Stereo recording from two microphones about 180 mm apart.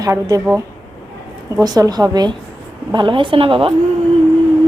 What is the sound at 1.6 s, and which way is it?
A woman's voice, 20° right (ahead or behind).